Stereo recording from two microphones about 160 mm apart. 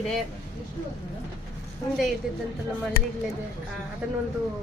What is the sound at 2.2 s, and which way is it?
Speech, 5° right (ahead or behind).